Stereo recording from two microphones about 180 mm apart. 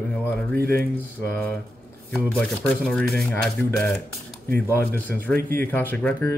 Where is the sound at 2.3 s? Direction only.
5° left (ahead or behind).